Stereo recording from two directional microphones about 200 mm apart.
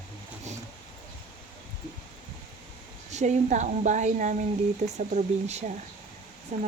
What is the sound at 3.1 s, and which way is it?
A woman's voice, 35° right (ahead or behind).